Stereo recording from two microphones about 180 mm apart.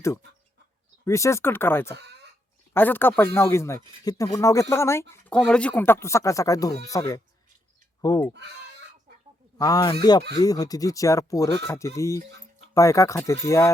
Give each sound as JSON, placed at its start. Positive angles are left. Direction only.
{"t": 1.0, "sound": "speech", "side_deg": 15}
{"t": 2.0, "sound": "a sound", "side_deg": -65}
{"t": 2.7, "sound": "speech", "side_deg": 10}
{"t": 9.6, "sound": "speech", "side_deg": 20}